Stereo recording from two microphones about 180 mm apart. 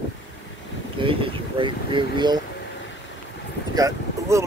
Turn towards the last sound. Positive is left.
turn(degrees=-20)  # may be behind; listen again after turning